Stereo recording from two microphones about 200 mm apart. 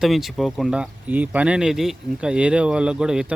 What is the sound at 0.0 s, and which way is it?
Speech, centre (ahead or behind).